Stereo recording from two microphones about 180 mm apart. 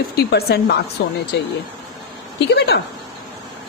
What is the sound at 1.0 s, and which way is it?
Speech, 75° left (ahead or behind).